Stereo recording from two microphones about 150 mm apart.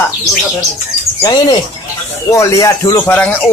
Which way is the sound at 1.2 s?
30° left (ahead or behind).